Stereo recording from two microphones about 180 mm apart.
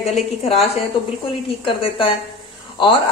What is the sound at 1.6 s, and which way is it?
Speech, 30° left (ahead or behind).